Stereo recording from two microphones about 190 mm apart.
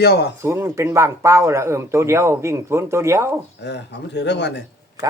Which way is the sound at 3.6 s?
65° left (ahead or behind).